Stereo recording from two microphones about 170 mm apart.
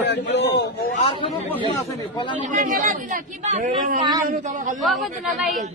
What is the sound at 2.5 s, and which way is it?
A man's voice, 55° right (ahead or behind).